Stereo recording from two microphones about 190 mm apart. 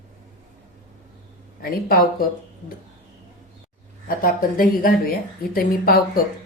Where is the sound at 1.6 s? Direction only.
50° left (ahead or behind).